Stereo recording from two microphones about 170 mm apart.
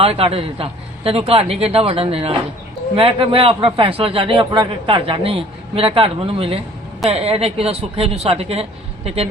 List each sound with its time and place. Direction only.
0.0 s a man's voice: 35° right (ahead or behind)